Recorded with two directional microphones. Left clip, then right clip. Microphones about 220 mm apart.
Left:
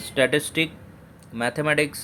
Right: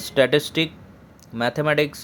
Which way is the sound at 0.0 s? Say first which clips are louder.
Right 3 dB; 15° right (ahead or behind).